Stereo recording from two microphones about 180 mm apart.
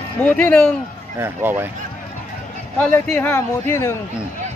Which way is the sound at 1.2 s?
10° right (ahead or behind).